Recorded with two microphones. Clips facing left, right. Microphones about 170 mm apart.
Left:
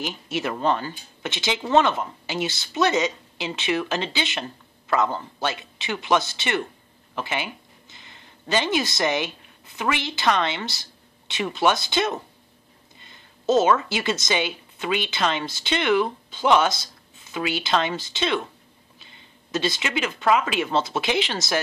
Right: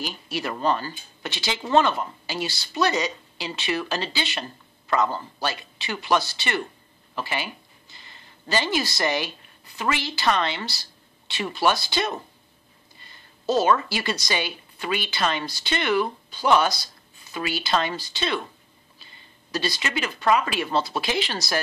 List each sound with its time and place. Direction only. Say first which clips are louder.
0.0 s a woman's voice: left 2 dB; 20° left (ahead or behind)
13.1 s a sound: left 3 dB; 20° left (ahead or behind)
13.7 s a woman's voice: left 2 dB; 20° left (ahead or behind)
19.5 s a woman's voice: left 2 dB; 20° left (ahead or behind)